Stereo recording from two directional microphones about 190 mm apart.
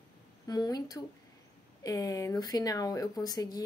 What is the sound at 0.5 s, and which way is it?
Speech, 20° left (ahead or behind).